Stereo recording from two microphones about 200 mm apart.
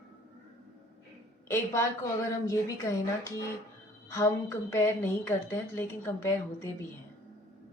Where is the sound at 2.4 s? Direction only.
15° left (ahead or behind).